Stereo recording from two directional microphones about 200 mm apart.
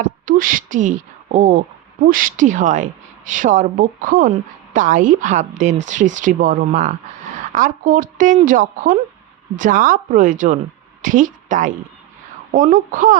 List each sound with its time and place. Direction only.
0.0 s a woman's voice: 45° right (ahead or behind)